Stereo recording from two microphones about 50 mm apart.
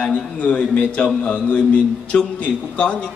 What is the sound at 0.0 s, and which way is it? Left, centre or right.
A man's voice, left.